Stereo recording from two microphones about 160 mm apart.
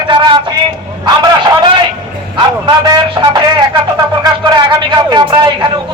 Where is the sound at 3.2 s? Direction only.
25° right (ahead or behind).